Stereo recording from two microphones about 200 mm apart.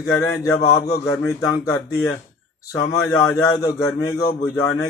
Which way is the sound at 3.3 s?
15° left (ahead or behind).